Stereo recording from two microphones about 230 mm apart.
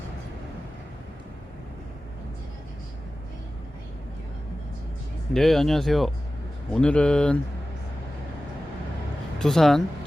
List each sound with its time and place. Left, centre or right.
5.3 s speech: centre
9.4 s speech: centre